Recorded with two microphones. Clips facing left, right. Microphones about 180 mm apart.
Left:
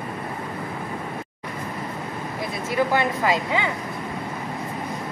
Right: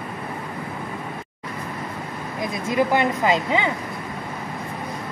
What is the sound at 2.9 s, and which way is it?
Speech, 20° right (ahead or behind).